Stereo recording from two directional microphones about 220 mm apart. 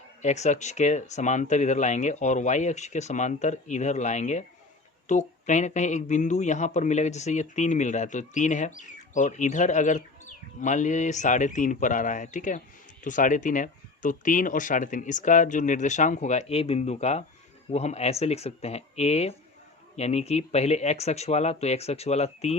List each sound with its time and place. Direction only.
0.2 s speech: 30° left (ahead or behind)